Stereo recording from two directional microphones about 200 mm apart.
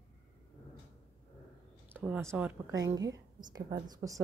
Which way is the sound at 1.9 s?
10° right (ahead or behind).